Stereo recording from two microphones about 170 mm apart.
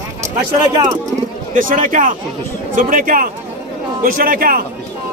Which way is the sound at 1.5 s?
50° right (ahead or behind).